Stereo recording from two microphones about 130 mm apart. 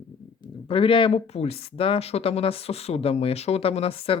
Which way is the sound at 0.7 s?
40° left (ahead or behind).